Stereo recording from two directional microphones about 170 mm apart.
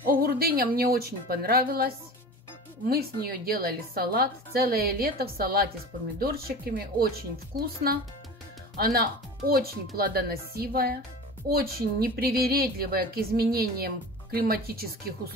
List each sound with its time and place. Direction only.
0.0 s speech: 60° right (ahead or behind)
2.9 s speech: 65° right (ahead or behind)